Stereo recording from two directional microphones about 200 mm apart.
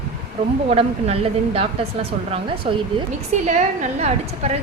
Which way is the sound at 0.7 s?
30° right (ahead or behind).